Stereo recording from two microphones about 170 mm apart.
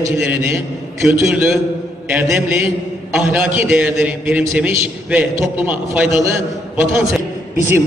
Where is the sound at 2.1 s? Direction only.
5° right (ahead or behind).